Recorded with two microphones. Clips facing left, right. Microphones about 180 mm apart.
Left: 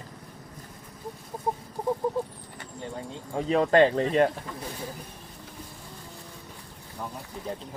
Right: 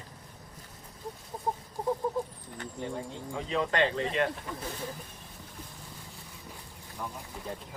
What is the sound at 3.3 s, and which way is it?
Speech, 45° left (ahead or behind).